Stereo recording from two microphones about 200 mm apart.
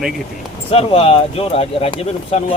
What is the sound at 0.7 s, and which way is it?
Speech, 30° left (ahead or behind).